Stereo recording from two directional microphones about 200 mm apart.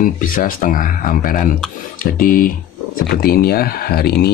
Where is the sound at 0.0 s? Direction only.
45° left (ahead or behind).